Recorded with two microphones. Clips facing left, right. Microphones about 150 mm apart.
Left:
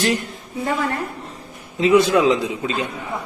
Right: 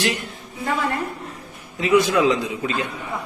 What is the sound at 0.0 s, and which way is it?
Speech, 40° left (ahead or behind).